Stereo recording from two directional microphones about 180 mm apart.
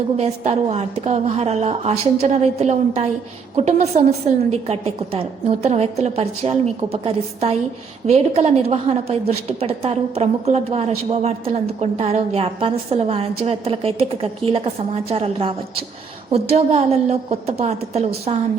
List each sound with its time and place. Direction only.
0.2 s a woman's voice: 35° right (ahead or behind)